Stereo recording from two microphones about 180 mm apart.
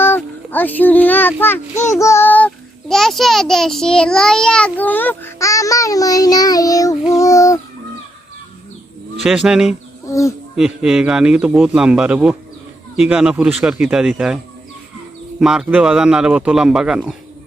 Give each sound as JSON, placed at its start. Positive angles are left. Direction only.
{"t": 0.0, "sound": "a sound", "side_deg": 10}
{"t": 1.4, "sound": "a child's voice", "side_deg": 10}
{"t": 1.8, "sound": "child singing", "side_deg": 15}
{"t": 2.9, "sound": "a child's voice", "side_deg": 0}
{"t": 9.2, "sound": "speech", "side_deg": -5}
{"t": 10.1, "sound": "speech", "side_deg": 15}
{"t": 10.6, "sound": "speech", "side_deg": 0}
{"t": 15.4, "sound": "speech", "side_deg": -5}